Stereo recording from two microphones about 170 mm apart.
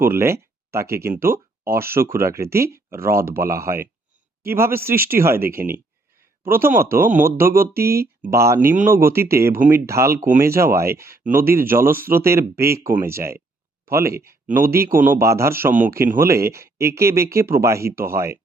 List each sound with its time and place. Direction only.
0.0 s speech: 15° right (ahead or behind)